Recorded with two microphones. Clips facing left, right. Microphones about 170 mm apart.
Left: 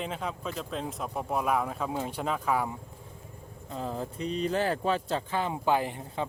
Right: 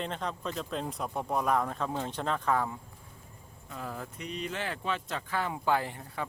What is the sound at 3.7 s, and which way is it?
Speech, 25° left (ahead or behind).